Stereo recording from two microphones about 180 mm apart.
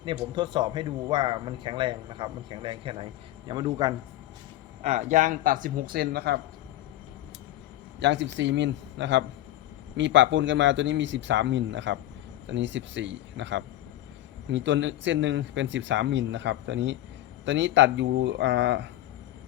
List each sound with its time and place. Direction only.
0.3 s a man's voice: 25° right (ahead or behind)
4.8 s speech: 40° right (ahead or behind); by 6.4 s 60° right (ahead or behind)
7.9 s a man's voice: 80° right